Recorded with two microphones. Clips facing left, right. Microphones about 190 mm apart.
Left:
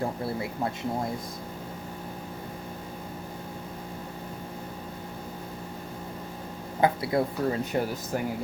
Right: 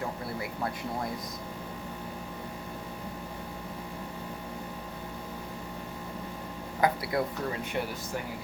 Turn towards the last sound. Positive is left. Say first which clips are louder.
# left 5 dB
turn(degrees=40)  # may be behind; listen again after turning